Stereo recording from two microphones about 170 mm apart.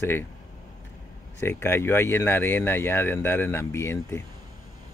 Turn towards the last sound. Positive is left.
turn(degrees=15)  # may be behind; listen again after turning